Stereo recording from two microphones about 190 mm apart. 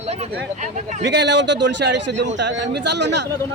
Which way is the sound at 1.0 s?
65° right (ahead or behind).